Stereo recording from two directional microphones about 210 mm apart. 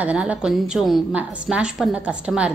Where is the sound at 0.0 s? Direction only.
5° right (ahead or behind).